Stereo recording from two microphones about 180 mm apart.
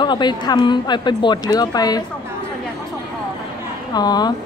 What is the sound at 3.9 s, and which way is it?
Speech, 25° left (ahead or behind).